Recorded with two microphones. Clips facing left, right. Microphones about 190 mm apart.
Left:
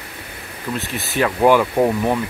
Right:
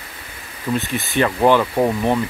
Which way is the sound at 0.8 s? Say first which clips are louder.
Even; centre (ahead or behind).